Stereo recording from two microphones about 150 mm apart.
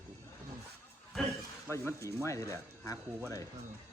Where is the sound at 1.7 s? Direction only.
15° left (ahead or behind).